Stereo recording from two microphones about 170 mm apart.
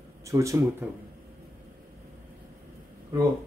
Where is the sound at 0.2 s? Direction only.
20° right (ahead or behind).